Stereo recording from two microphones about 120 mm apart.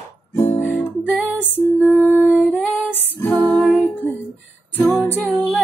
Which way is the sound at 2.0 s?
15° right (ahead or behind).